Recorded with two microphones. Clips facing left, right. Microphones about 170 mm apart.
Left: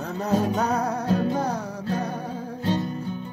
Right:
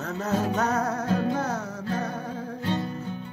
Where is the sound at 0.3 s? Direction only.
10° left (ahead or behind).